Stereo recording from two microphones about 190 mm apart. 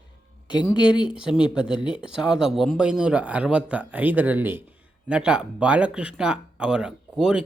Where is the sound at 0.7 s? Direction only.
5° right (ahead or behind).